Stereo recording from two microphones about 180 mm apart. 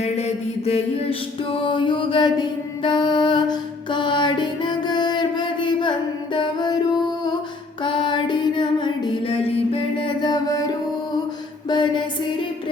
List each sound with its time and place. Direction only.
0.0 s mantra: 35° left (ahead or behind)
6.3 s music: 25° left (ahead or behind)
7.9 s music: 25° left (ahead or behind)